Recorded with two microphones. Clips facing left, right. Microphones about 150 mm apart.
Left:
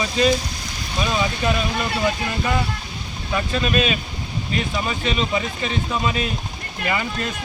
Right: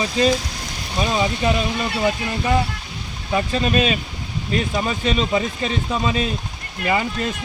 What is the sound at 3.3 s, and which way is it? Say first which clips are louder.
Speech: right 2 dB; 30° right (ahead or behind).